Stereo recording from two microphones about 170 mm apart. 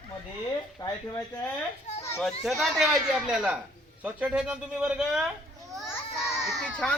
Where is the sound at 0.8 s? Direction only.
25° left (ahead or behind).